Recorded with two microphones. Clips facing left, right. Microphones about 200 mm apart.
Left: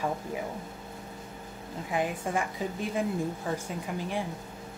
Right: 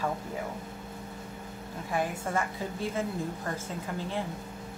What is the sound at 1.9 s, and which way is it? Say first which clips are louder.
Speech: left 1 dB; 15° left (ahead or behind).